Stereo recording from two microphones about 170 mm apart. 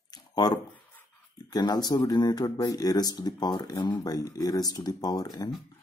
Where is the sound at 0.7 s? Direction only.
10° left (ahead or behind).